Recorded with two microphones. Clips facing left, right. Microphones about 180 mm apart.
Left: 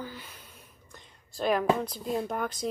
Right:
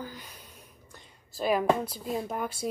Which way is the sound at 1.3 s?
5° right (ahead or behind).